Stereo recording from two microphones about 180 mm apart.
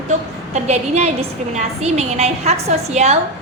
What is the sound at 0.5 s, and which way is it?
A woman's voice, 40° right (ahead or behind).